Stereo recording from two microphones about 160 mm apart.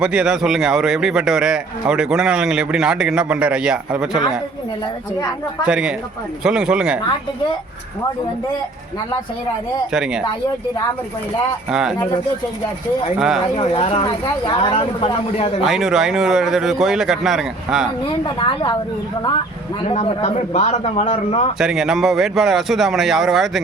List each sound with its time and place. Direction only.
0.0 s speech: 5° right (ahead or behind)
5.6 s speech: 5° right (ahead or behind)
9.9 s speech: 5° right (ahead or behind)
11.7 s speech: 5° right (ahead or behind)
13.1 s speech: 5° right (ahead or behind)
13.6 s speech: 35° left (ahead or behind)
15.6 s speech: centre (ahead or behind)
18.3 s speech: 30° left (ahead or behind)
19.9 s speech: 40° left (ahead or behind)
21.6 s speech: 5° right (ahead or behind)